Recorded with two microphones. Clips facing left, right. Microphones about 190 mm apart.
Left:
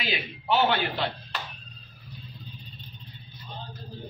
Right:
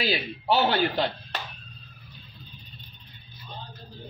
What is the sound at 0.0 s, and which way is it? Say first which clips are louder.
Speech: right 5 dB; 35° right (ahead or behind).